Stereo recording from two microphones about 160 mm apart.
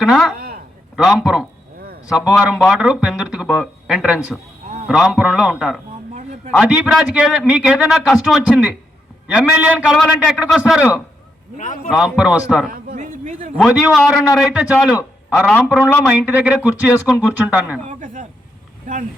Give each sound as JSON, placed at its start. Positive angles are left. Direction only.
{"t": 0.0, "sound": "a man's voice", "side_deg": 0}
{"t": 0.3, "sound": "a sound", "side_deg": -70}
{"t": 0.9, "sound": "a man's voice", "side_deg": -5}
{"t": 11.5, "sound": "a man's voice", "side_deg": 50}
{"t": 11.9, "sound": "a man's voice", "side_deg": -5}
{"t": 12.7, "sound": "a man's voice", "side_deg": -55}
{"t": 13.6, "sound": "a man's voice", "side_deg": -5}
{"t": 17.8, "sound": "a sound", "side_deg": -55}